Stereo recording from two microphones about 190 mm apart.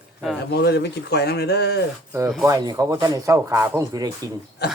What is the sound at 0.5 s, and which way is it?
Speech, 60° left (ahead or behind).